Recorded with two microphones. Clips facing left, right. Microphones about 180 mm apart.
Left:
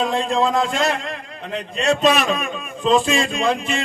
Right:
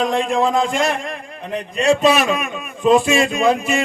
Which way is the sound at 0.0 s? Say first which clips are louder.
Right 2 dB; 15° right (ahead or behind).